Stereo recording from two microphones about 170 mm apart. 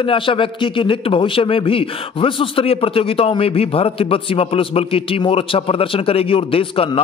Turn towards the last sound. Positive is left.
turn(degrees=30)  # may be behind; listen again after turning